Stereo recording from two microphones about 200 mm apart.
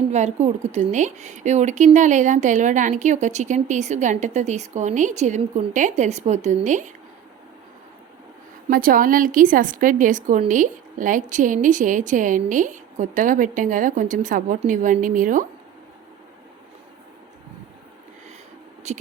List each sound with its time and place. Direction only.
0.1 s a woman's voice: 35° right (ahead or behind)
8.6 s a woman's voice: 45° right (ahead or behind)
18.9 s a woman's voice: 35° right (ahead or behind)